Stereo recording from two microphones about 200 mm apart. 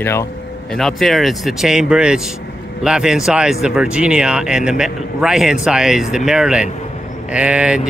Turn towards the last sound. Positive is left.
turn(degrees=-5)  # may be behind; listen again after turning